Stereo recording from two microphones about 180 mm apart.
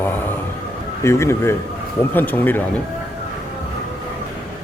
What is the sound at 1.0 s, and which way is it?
A man's voice, 15° left (ahead or behind).